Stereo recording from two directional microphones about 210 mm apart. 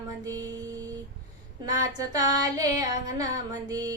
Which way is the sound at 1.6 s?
15° right (ahead or behind).